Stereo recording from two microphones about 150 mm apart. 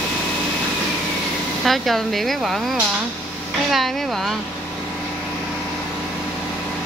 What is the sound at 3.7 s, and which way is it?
Speech, centre (ahead or behind).